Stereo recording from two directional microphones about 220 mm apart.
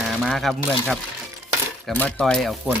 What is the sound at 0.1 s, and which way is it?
Speech, centre (ahead or behind).